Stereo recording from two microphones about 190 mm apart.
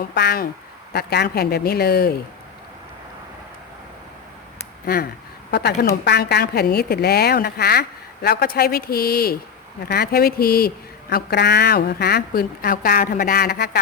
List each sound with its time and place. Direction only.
0.1 s a woman's voice: 60° left (ahead or behind)
5.5 s a woman's voice: 60° left (ahead or behind)